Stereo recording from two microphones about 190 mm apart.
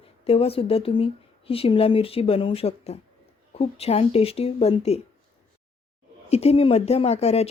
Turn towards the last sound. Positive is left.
turn(degrees=35)  # may be behind; listen again after turning